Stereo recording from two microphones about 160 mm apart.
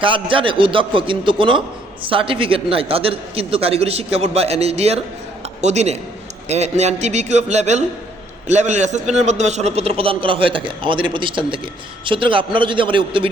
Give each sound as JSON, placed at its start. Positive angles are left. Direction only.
{"t": 0.0, "sound": "a man's voice", "side_deg": -35}